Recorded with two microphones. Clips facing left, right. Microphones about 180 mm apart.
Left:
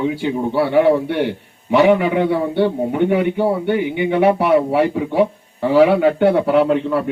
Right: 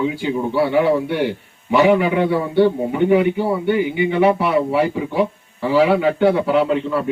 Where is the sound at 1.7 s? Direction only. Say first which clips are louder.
Left 1 dB; 55° left (ahead or behind).